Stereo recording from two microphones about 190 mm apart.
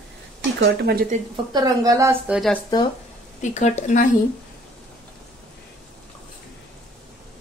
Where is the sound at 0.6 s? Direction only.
55° right (ahead or behind).